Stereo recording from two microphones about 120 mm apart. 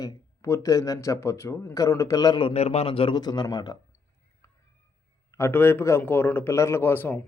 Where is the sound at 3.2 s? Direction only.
35° left (ahead or behind).